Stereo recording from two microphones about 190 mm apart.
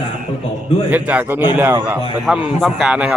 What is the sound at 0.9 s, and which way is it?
A man's voice, 10° right (ahead or behind).